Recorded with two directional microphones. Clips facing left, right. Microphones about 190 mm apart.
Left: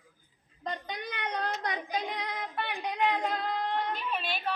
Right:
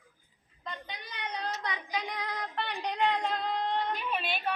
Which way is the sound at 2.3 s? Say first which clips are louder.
Even; 10° left (ahead or behind).